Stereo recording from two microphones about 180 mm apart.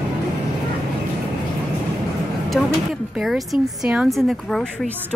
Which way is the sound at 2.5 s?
Centre (ahead or behind).